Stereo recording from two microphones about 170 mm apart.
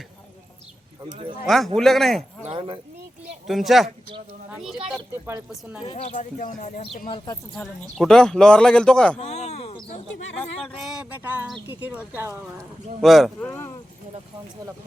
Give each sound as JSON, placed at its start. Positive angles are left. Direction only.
{"t": 1.5, "sound": "speech", "side_deg": 0}
{"t": 2.4, "sound": "speech", "side_deg": -35}
{"t": 3.4, "sound": "speech", "side_deg": 0}
{"t": 6.1, "sound": "speech", "side_deg": 50}
{"t": 7.5, "sound": "speech", "side_deg": 5}
{"t": 9.3, "sound": "speech", "side_deg": 40}
{"t": 10.4, "sound": "speech", "side_deg": 0}
{"t": 13.0, "sound": "speech", "side_deg": 0}